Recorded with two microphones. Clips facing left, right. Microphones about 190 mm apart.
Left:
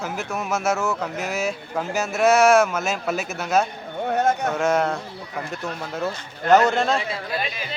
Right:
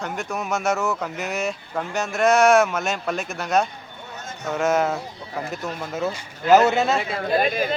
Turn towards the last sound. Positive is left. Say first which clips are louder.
# right 8 dB
turn(degrees=-50)  # may be behind; listen again after turning